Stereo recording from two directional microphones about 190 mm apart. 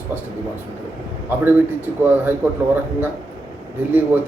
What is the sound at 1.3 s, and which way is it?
Speech, 10° right (ahead or behind).